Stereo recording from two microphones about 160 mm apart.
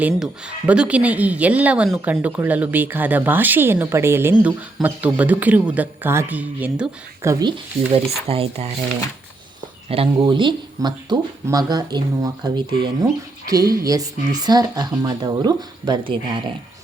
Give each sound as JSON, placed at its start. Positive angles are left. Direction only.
{"t": 0.0, "sound": "speech", "side_deg": -5}
{"t": 9.9, "sound": "speech", "side_deg": -35}